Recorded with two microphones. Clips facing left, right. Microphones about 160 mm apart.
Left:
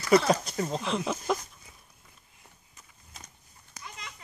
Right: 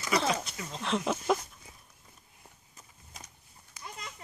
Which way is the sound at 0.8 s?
Centre (ahead or behind).